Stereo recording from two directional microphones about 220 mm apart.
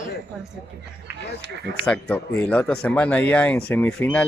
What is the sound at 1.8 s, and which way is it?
Speech, 5° left (ahead or behind).